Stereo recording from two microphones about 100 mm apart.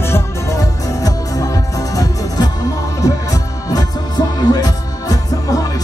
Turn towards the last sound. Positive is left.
turn(degrees=35)  # may be behind; listen again after turning